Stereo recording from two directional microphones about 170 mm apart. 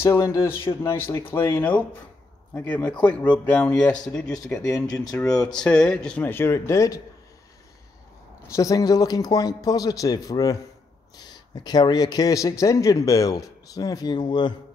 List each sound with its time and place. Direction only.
0.0 s a man's voice: 15° left (ahead or behind)
4.6 s a man's voice: 20° left (ahead or behind)
5.4 s a man's voice: 5° left (ahead or behind)
8.5 s a man's voice: 20° left (ahead or behind)